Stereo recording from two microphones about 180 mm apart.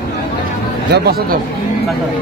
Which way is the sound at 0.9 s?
60° right (ahead or behind).